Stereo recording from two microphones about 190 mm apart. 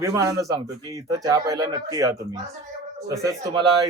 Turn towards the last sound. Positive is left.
turn(degrees=-15)  # may be behind; listen again after turning